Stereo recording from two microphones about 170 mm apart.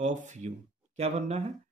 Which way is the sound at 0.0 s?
45° right (ahead or behind).